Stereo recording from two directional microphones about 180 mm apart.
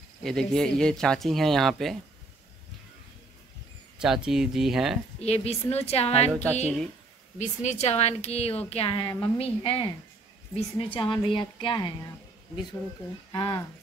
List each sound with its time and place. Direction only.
0.2 s speech: centre (ahead or behind)
4.0 s speech: 5° right (ahead or behind)
5.2 s a woman's voice: 35° left (ahead or behind)
7.3 s a woman's voice: 40° left (ahead or behind)
13.3 s a woman's voice: 20° left (ahead or behind)